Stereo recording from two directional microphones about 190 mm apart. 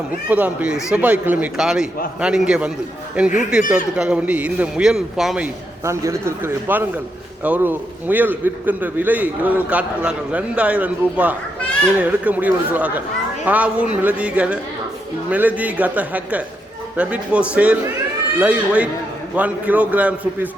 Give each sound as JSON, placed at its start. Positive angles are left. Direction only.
{"t": 0.3, "sound": "a man's voice", "side_deg": -10}
{"t": 5.8, "sound": "a man's voice", "side_deg": -15}